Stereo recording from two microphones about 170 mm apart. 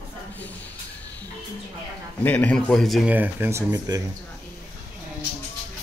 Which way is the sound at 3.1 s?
10° right (ahead or behind).